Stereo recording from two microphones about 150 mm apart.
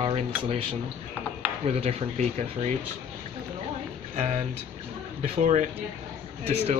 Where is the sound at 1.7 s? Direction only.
45° right (ahead or behind).